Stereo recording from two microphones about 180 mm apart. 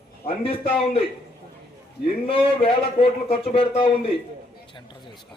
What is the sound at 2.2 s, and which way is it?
A man's voice, 30° left (ahead or behind).